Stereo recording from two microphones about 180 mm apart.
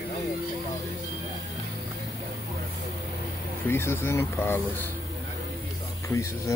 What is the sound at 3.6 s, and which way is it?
Speech, 15° left (ahead or behind).